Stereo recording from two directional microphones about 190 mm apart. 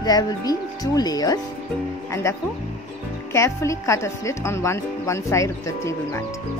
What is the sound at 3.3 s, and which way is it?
A woman's voice, 15° left (ahead or behind).